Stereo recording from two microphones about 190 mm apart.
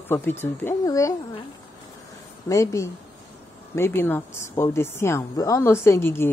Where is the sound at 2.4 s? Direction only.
15° left (ahead or behind).